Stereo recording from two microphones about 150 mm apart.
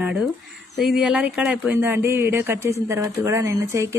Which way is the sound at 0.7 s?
Centre (ahead or behind).